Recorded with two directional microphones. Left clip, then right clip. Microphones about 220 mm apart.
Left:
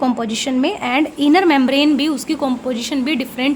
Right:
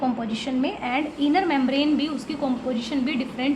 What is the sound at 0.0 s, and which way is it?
A woman's voice, 50° left (ahead or behind).